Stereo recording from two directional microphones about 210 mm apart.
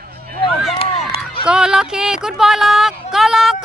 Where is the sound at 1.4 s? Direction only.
5° right (ahead or behind).